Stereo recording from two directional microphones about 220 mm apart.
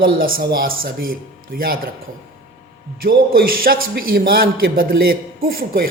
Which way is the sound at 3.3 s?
40° right (ahead or behind).